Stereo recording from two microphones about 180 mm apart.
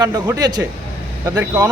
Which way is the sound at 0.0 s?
20° right (ahead or behind).